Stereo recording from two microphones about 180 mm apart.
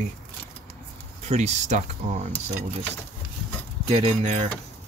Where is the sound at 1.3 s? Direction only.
40° right (ahead or behind).